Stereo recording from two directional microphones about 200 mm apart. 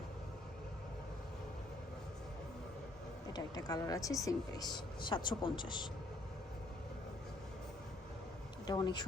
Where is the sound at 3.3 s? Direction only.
20° left (ahead or behind).